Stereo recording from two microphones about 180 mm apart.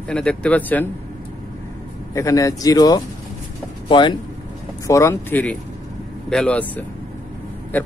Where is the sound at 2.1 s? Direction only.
20° left (ahead or behind).